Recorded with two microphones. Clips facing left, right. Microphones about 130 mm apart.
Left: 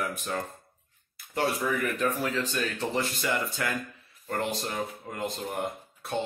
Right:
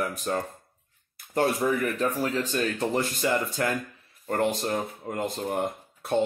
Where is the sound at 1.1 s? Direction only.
45° right (ahead or behind).